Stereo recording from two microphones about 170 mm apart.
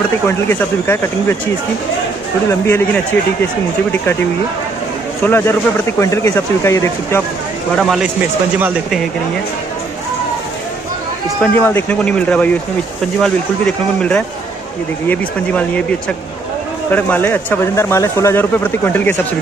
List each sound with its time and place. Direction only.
0.5 s speech: 15° left (ahead or behind)
2.6 s speech: 10° left (ahead or behind)
5.2 s speech: 10° left (ahead or behind)
7.7 s speech: centre (ahead or behind)
11.5 s speech: 10° left (ahead or behind)